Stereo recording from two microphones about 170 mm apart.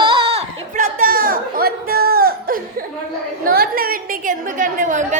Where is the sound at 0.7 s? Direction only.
55° right (ahead or behind).